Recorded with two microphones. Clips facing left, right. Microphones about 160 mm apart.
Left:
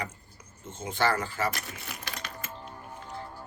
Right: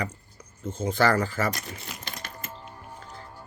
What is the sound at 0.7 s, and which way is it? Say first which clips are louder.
Speech: right 5 dB; 35° right (ahead or behind).